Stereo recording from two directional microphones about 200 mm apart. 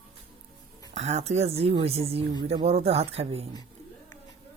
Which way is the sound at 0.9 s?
35° right (ahead or behind).